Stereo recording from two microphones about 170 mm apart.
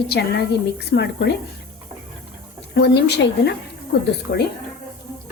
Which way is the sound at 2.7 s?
80° left.